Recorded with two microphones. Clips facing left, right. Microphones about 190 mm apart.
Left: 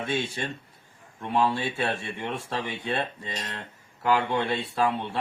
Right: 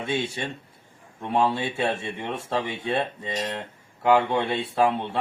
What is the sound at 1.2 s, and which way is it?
Speech, 20° right (ahead or behind).